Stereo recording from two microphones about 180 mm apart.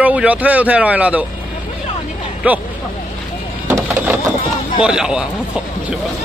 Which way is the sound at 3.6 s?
15° right (ahead or behind).